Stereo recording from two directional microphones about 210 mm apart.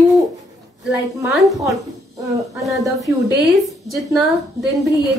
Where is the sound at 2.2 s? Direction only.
15° right (ahead or behind).